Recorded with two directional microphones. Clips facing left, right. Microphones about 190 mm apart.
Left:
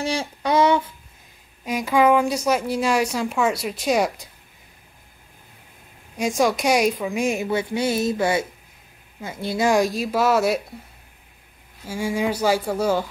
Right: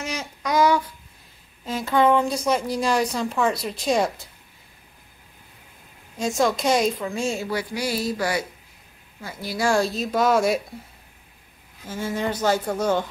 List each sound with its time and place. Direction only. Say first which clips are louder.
0.0 s a sound: left 5 dB; 30° left (ahead or behind)
1.6 s a woman's voice: left 2 dB; 15° left (ahead or behind)
6.1 s a woman's voice: left 2 dB; 15° left (ahead or behind)
11.8 s a woman's voice: left 3 dB; 10° left (ahead or behind)